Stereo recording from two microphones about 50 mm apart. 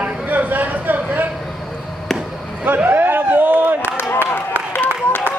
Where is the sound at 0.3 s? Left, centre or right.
Right.